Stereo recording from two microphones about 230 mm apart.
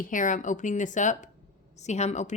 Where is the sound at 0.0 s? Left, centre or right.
Left.